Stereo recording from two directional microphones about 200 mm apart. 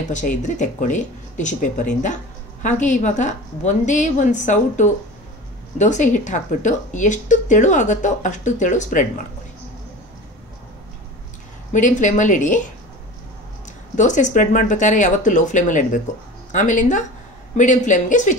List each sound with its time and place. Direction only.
0.1 s a woman's voice: 40° left (ahead or behind)
11.7 s a woman's voice: 40° left (ahead or behind)
13.9 s a woman's voice: 40° left (ahead or behind)